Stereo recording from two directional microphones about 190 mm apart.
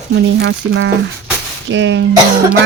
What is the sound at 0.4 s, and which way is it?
Speech, 75° right (ahead or behind).